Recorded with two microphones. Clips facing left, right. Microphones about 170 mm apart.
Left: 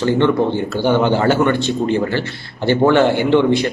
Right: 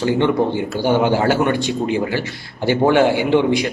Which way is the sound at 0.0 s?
10° right (ahead or behind).